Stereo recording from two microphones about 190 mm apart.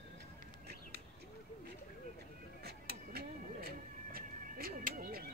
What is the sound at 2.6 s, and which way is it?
Cat, 55° right (ahead or behind).